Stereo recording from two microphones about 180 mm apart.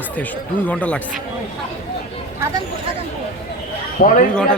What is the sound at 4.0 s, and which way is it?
Speech, 55° left (ahead or behind).